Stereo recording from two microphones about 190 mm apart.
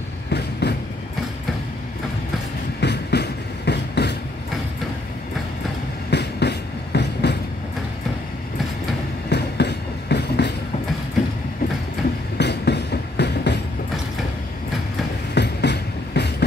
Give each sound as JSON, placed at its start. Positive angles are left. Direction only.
{"t": 0.3, "sound": "train", "side_deg": 60}
{"t": 2.8, "sound": "train", "side_deg": 60}
{"t": 6.0, "sound": "train", "side_deg": 60}
{"t": 9.3, "sound": "train", "side_deg": 60}
{"t": 12.4, "sound": "train", "side_deg": 60}
{"t": 15.3, "sound": "train", "side_deg": 60}